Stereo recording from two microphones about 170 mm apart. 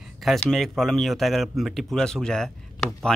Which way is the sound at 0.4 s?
Centre (ahead or behind).